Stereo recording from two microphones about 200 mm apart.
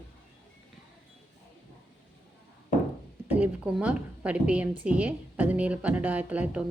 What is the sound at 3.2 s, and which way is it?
A woman's voice, 10° right (ahead or behind).